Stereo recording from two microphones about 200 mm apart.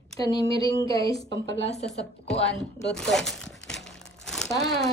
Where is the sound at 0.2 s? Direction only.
20° left (ahead or behind).